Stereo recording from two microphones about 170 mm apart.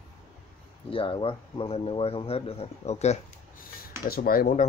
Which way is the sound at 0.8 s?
30° left (ahead or behind).